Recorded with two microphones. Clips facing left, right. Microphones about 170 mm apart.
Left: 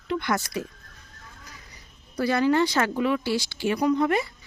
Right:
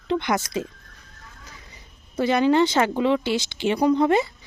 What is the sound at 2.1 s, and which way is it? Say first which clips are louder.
Speech: right 3 dB; 20° right (ahead or behind).